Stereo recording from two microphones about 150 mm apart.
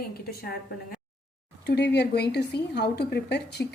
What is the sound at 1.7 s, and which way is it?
A woman's voice, 90° left.